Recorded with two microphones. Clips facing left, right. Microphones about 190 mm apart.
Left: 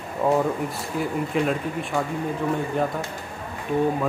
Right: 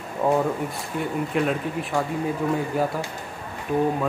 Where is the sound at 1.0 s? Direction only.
Centre (ahead or behind).